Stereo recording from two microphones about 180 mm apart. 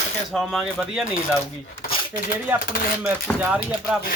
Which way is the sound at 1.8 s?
55° left (ahead or behind).